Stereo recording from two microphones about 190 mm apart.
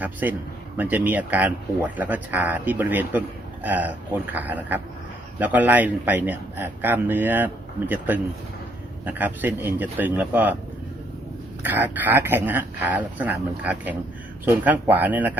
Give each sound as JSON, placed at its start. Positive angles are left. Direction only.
{"t": 0.0, "sound": "speech", "side_deg": -10}
{"t": 11.6, "sound": "speech", "side_deg": -10}